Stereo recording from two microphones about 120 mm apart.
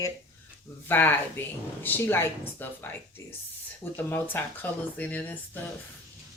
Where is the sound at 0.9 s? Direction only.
15° left (ahead or behind).